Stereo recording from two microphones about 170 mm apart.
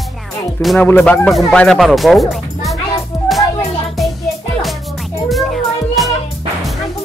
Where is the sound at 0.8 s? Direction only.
10° left (ahead or behind).